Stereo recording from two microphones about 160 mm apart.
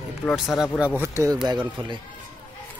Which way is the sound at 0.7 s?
10° right (ahead or behind).